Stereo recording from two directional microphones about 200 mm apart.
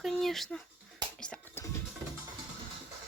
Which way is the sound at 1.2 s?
5° left (ahead or behind).